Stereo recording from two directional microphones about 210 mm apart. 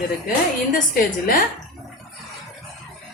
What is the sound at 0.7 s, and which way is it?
Speech, 45° left (ahead or behind).